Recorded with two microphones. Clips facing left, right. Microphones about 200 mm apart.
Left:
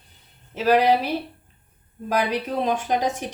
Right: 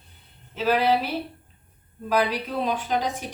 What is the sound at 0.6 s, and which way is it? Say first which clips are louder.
Speech: left 3 dB; 45° left (ahead or behind).